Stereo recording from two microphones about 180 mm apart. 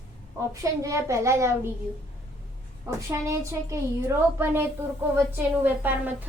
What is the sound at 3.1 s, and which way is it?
A woman's voice, 15° right (ahead or behind).